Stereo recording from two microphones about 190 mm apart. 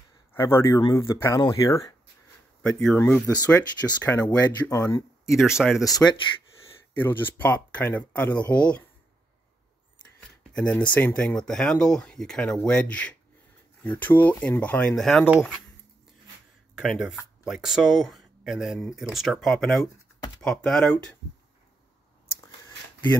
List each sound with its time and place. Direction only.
0.3 s speech: 15° left (ahead or behind)
2.6 s speech: 5° left (ahead or behind)
5.6 s speech: centre (ahead or behind)
5.9 s speech: 20° left (ahead or behind)
7.0 s speech: 10° left (ahead or behind)
10.5 s speech: 5° left (ahead or behind)
16.7 s speech: centre (ahead or behind)